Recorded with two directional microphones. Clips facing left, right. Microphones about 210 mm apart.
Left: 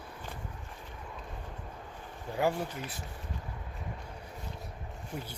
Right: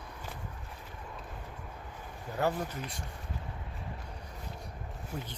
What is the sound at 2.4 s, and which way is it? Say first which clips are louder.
Speech: left 1 dB; 5° left (ahead or behind).